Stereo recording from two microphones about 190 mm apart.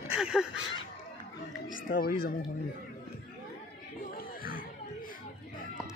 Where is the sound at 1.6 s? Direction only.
45° left (ahead or behind).